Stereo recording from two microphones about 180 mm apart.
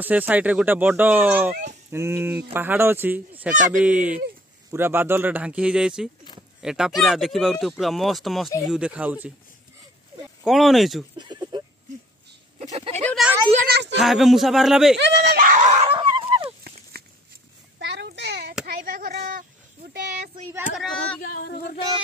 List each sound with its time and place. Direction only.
0.0 s speech: 10° right (ahead or behind)
1.5 s speech: 40° right (ahead or behind)
1.9 s speech: 15° right (ahead or behind)
10.4 s speech: centre (ahead or behind)
11.1 s a sound: 25° right (ahead or behind)
12.9 s speech: 10° left (ahead or behind)
13.7 s speech: 70° right (ahead or behind)
13.9 s speech: centre (ahead or behind)
15.0 s screaming: 70° right (ahead or behind); by 16.4 s 30° right (ahead or behind)
17.0 s a sound: 60° right (ahead or behind)
18.7 s a sound: 50° right (ahead or behind)
20.7 s speech: centre (ahead or behind)
21.3 s a sound: 60° left (ahead or behind)